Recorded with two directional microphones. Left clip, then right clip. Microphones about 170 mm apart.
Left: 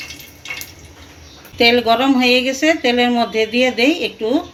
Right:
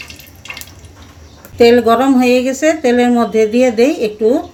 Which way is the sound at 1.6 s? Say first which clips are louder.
Right 4 dB; 60° right (ahead or behind).